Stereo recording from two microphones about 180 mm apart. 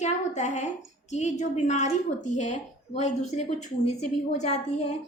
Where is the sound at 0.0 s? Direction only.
40° left (ahead or behind).